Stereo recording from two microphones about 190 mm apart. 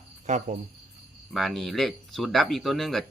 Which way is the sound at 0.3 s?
40° right (ahead or behind).